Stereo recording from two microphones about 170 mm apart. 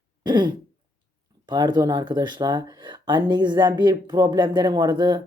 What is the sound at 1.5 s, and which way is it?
Speech, 25° right (ahead or behind).